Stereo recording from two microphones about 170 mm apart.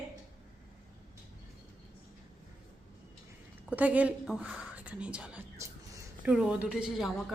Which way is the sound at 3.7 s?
10° right (ahead or behind).